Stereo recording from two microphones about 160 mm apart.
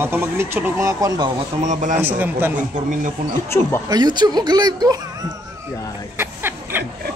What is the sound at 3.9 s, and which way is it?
Speech, 25° right (ahead or behind).